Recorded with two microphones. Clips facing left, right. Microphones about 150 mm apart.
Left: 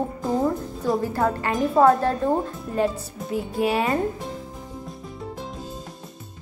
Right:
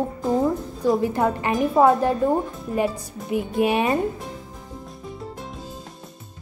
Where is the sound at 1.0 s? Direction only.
15° right (ahead or behind).